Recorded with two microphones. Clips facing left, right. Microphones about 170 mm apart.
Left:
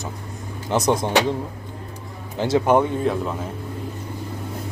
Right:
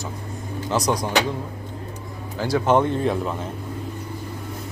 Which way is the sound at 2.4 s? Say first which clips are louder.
Left 3 dB; 20° left (ahead or behind).